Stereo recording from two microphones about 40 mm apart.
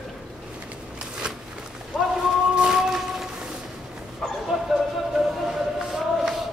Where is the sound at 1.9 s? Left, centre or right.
Centre.